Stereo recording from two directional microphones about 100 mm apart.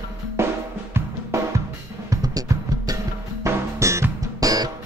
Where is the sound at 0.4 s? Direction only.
25° right (ahead or behind).